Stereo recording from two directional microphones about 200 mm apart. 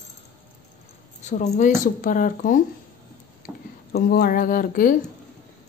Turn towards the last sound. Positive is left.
turn(degrees=45)  # may be behind; listen again after turning